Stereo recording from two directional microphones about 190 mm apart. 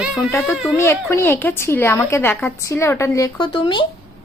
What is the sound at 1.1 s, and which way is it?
A woman's voice, 15° left (ahead or behind).